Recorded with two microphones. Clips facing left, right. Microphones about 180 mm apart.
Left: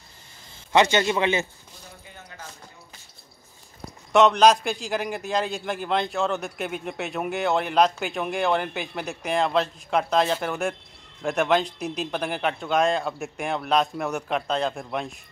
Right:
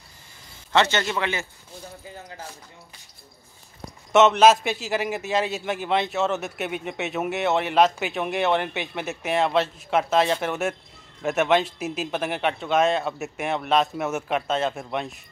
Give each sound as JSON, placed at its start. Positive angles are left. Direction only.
{"t": 0.7, "sound": "a man's voice", "side_deg": 15}
{"t": 4.1, "sound": "a man's voice", "side_deg": -5}